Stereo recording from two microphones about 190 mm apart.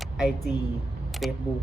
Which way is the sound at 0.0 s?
Centre (ahead or behind).